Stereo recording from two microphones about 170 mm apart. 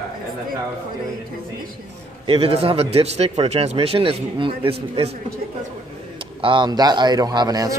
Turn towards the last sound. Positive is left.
turn(degrees=-20)  # may be behind; listen again after turning